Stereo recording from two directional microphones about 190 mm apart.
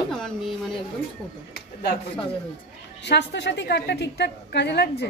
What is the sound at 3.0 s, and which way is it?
A woman's voice, 65° left (ahead or behind).